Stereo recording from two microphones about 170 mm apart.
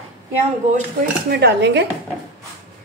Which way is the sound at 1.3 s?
80° right.